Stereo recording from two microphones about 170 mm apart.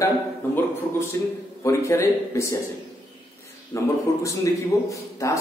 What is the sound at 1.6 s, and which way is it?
Speech, 15° left (ahead or behind).